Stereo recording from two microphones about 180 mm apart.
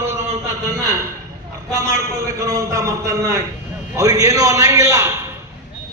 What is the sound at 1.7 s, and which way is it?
A man's voice, 20° right (ahead or behind).